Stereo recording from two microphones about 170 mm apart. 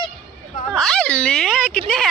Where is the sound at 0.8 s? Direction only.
5° left (ahead or behind).